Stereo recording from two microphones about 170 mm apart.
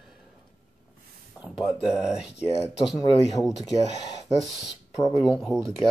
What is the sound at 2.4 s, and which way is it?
Speech, 40° left (ahead or behind).